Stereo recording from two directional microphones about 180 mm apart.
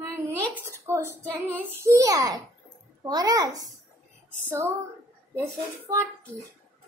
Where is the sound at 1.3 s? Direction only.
15° right (ahead or behind).